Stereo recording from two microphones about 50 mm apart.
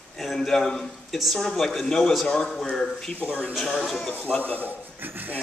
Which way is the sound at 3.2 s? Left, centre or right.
Right.